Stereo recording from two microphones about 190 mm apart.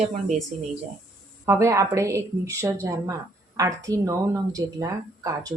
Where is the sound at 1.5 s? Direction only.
15° right (ahead or behind).